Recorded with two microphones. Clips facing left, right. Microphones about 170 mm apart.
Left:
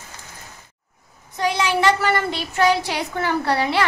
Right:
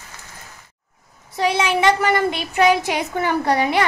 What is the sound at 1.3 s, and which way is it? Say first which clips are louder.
A woman's voice: right 2 dB; 20° right (ahead or behind).